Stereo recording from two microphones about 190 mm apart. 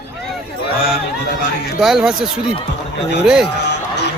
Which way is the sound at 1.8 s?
Centre (ahead or behind).